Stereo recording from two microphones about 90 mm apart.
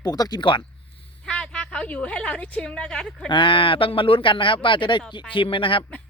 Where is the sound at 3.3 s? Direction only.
65° left (ahead or behind).